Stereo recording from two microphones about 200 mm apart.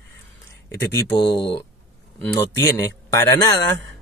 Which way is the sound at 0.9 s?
25° left (ahead or behind).